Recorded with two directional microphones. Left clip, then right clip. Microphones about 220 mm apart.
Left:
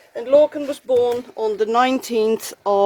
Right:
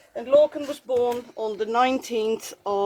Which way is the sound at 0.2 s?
30° left (ahead or behind).